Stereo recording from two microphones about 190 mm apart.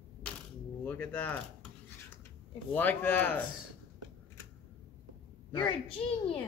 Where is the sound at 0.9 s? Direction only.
10° left (ahead or behind).